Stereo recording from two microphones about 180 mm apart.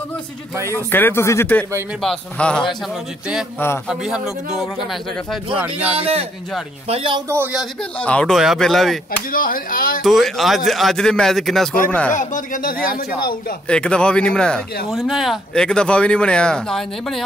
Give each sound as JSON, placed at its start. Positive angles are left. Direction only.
{"t": 0.9, "sound": "speech", "side_deg": 10}
{"t": 3.9, "sound": "speech", "side_deg": -5}
{"t": 5.9, "sound": "a man's voice", "side_deg": -35}
{"t": 7.2, "sound": "speech", "side_deg": -15}
{"t": 8.0, "sound": "speech", "side_deg": 5}
{"t": 9.3, "sound": "a woman's voice", "side_deg": 50}
{"t": 10.0, "sound": "speech", "side_deg": 0}
{"t": 12.1, "sound": "a woman's voice", "side_deg": 45}
{"t": 13.7, "sound": "speech", "side_deg": 5}